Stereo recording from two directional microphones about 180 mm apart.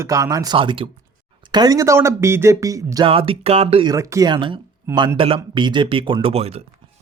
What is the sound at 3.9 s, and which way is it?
Speech, 15° right (ahead or behind).